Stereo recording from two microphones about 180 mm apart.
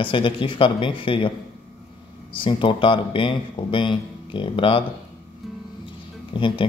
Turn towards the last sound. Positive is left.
turn(degrees=30)  # may be behind; listen again after turning